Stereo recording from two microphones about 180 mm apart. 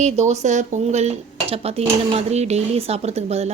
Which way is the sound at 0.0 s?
35° right (ahead or behind).